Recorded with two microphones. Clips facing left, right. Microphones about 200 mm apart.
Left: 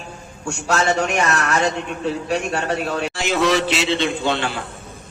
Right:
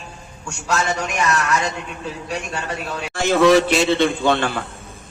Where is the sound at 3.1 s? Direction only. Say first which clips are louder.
Right 7 dB; 50° right (ahead or behind).